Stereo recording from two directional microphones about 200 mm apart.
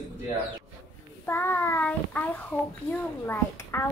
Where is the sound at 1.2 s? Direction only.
10° left (ahead or behind).